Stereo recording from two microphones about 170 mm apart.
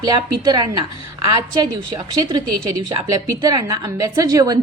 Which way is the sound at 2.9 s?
20° right (ahead or behind).